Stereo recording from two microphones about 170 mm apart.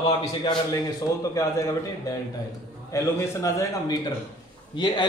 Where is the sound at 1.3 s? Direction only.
20° left (ahead or behind).